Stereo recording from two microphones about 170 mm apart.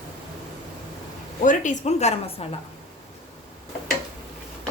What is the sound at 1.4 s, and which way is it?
A woman's voice, 50° left (ahead or behind).